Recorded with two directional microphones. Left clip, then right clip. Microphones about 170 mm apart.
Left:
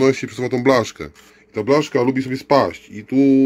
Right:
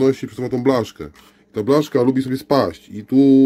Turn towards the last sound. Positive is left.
turn(degrees=-45)  # may be behind; listen again after turning